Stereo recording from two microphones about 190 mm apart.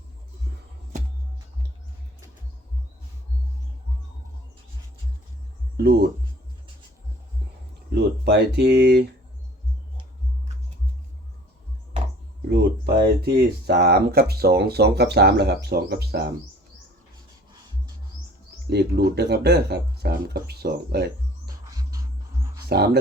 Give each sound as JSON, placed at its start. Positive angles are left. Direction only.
{"t": 5.7, "sound": "speech", "side_deg": -55}
{"t": 7.9, "sound": "speech", "side_deg": -60}
{"t": 12.5, "sound": "speech", "side_deg": -60}
{"t": 18.7, "sound": "speech", "side_deg": -60}
{"t": 21.8, "sound": "music", "side_deg": -20}
{"t": 22.7, "sound": "speech", "side_deg": -60}